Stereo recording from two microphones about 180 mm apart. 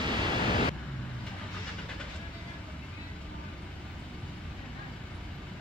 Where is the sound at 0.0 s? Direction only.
25° right (ahead or behind).